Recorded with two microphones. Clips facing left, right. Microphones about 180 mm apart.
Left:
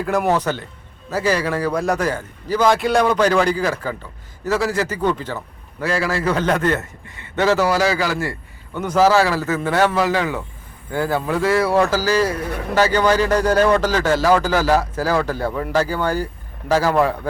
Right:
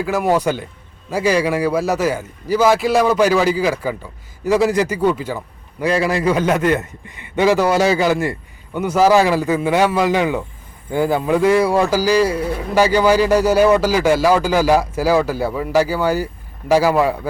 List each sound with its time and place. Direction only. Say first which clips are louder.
0.0 s speech: right 2 dB; centre (ahead or behind)
7.7 s speech: right 4 dB; 25° right (ahead or behind); by 17.2 s 10° right (ahead or behind)